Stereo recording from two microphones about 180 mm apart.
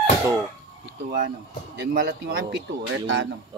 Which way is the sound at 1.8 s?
70° right (ahead or behind).